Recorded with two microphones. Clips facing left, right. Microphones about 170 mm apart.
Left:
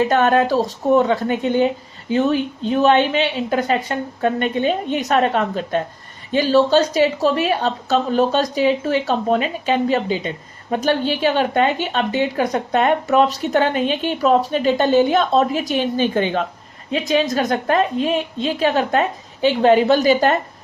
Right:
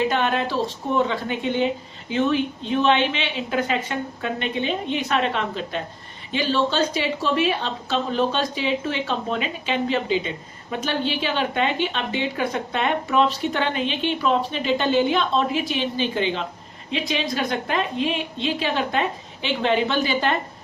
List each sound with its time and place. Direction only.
0.0 s a woman's voice: 45° left (ahead or behind)